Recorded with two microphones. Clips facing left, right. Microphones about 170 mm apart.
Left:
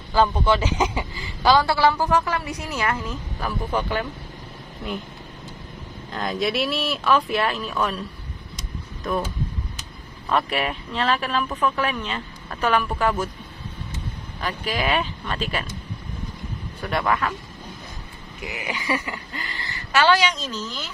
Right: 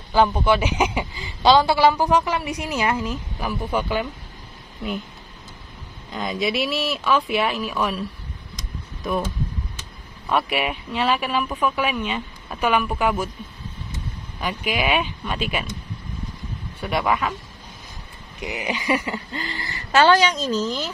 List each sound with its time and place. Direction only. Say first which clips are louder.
0.1 s a man's voice: right 1 dB; 10° right (ahead or behind)
6.1 s speech: even; centre (ahead or behind)
9.0 s a man's voice: right 1 dB; 10° right (ahead or behind)
10.2 s a man's voice: right 1 dB; 5° right (ahead or behind)
14.4 s a man's voice: right 2 dB; 15° right (ahead or behind)
16.8 s a man's voice: right 1 dB; 10° right (ahead or behind)
18.4 s speech: right 4 dB; 20° right (ahead or behind)
20.1 s a woman's voice: right 3 dB; 40° right (ahead or behind)